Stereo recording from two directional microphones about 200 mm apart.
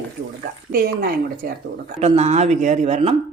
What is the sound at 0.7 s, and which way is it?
Speech, 50° right (ahead or behind).